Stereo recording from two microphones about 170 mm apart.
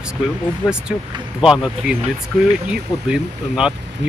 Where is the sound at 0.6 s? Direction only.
20° left (ahead or behind).